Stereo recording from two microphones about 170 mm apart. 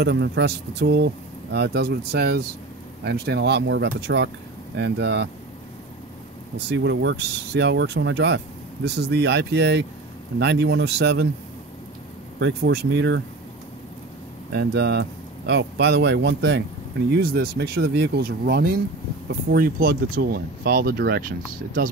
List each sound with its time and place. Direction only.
0.0 s speech: 80° right
6.7 s speech: 90° right; by 11.2 s 75° right (ahead or behind)
12.4 s speech: 90° right
14.5 s speech: 75° right (ahead or behind)
17.1 s speech: 65° right (ahead or behind)